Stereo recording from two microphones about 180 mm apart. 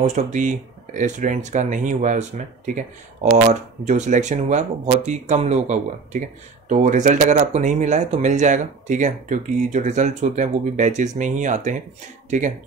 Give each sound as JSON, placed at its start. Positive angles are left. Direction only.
{"t": 0.0, "sound": "speech", "side_deg": -40}